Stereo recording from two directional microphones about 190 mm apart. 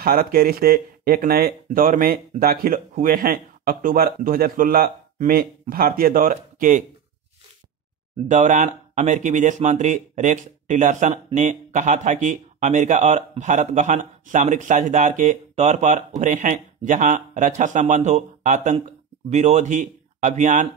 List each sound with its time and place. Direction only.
0.0 s speech: 50° right (ahead or behind)
8.3 s speech: 40° right (ahead or behind)